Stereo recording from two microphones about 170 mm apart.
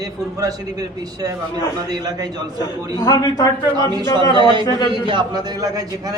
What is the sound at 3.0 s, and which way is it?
Speech, 25° left (ahead or behind).